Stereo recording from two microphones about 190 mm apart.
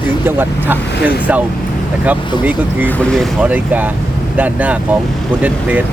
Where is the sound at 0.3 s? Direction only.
10° right (ahead or behind).